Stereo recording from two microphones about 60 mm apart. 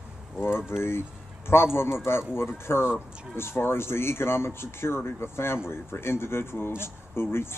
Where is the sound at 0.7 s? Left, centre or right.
Left.